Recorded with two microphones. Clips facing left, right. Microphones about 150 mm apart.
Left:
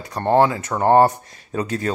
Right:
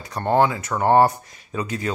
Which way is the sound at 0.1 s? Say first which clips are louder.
Left 2 dB; 30° left (ahead or behind).